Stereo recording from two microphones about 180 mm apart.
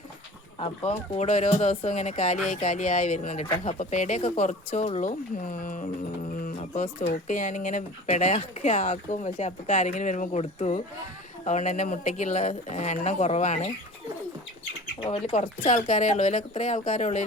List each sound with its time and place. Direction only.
0.6 s speech: 30° left (ahead or behind)
15.0 s speech: 35° left (ahead or behind)